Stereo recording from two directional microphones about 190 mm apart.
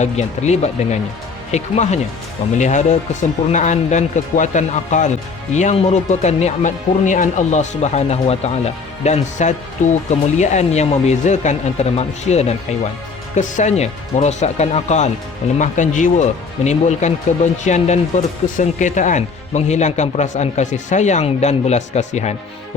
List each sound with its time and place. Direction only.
0.0 s speech: 35° left (ahead or behind)